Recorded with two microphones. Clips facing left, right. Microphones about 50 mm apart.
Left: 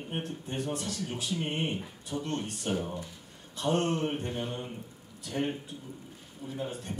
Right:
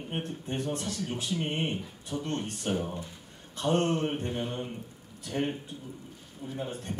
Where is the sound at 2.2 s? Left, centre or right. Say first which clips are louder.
Right 2 dB; right.